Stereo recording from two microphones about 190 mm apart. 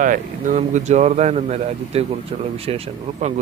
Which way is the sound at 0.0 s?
45° right (ahead or behind).